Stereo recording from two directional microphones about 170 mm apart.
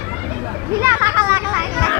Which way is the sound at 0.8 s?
15° right (ahead or behind).